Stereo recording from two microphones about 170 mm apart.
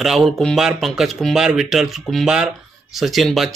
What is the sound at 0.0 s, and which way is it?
Speech, centre (ahead or behind).